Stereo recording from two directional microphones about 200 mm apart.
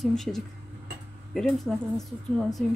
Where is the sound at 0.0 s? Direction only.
Centre (ahead or behind).